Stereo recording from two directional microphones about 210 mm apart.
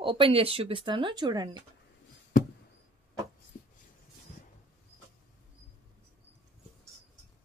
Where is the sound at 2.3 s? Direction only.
40° left (ahead or behind).